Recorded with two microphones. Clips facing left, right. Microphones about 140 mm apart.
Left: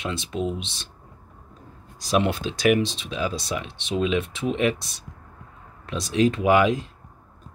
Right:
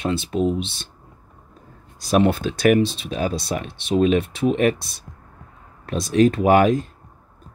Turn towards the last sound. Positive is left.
turn(degrees=-45)  # may be behind; listen again after turning